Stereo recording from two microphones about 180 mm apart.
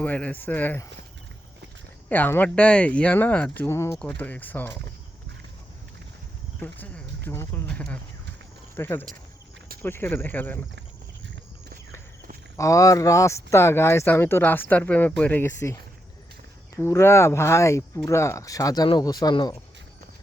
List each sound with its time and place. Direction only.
0.0 s speech: 10° left (ahead or behind)
2.0 s speech: 10° left (ahead or behind)
6.6 s speech: 10° left (ahead or behind)
12.5 s speech: 15° left (ahead or behind)